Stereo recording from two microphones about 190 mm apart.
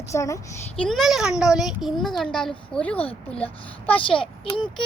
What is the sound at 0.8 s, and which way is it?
A child's voice, centre (ahead or behind).